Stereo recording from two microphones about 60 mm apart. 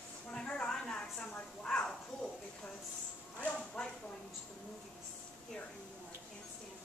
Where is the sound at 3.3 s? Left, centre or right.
Centre.